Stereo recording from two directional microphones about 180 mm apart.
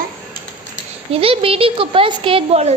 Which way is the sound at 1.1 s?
30° right (ahead or behind).